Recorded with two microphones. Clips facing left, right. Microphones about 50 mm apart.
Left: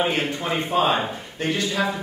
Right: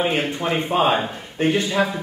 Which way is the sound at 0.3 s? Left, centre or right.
Centre.